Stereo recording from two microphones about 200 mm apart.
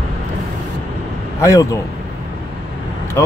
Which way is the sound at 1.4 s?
15° left (ahead or behind).